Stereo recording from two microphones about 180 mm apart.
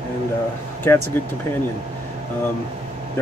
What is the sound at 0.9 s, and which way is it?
Speech, 15° left (ahead or behind).